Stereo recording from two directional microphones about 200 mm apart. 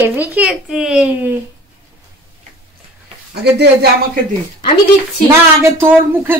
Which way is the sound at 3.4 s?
55° right (ahead or behind).